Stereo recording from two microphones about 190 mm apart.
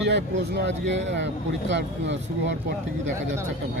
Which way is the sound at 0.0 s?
65° right (ahead or behind).